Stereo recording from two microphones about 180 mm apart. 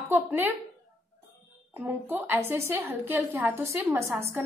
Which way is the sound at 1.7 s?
10° right (ahead or behind).